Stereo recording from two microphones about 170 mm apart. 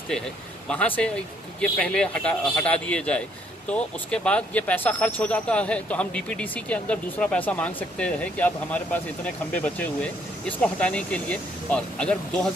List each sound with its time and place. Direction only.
0.7 s speech: 10° left (ahead or behind)